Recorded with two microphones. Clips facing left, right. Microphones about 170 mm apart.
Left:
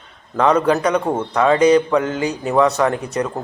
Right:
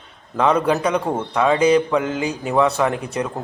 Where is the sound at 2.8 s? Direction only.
10° right (ahead or behind).